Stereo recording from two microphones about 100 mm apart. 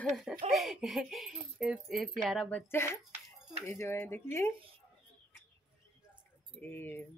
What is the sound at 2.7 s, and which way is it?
Speech, 25° left (ahead or behind).